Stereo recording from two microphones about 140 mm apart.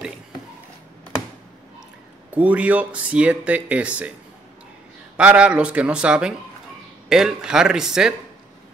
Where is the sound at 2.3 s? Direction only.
10° right (ahead or behind).